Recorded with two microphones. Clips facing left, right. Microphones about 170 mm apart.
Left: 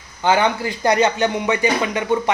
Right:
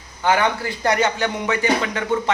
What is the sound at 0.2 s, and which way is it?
Speech, 20° left (ahead or behind).